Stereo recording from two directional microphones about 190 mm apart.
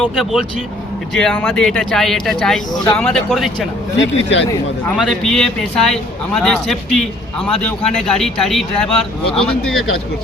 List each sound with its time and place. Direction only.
0.0 s a man's voice: centre (ahead or behind)
3.9 s speech: 70° left (ahead or behind)
5.0 s a man's voice: centre (ahead or behind)